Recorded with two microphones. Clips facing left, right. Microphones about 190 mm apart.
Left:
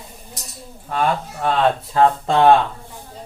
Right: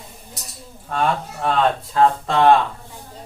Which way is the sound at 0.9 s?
Centre (ahead or behind).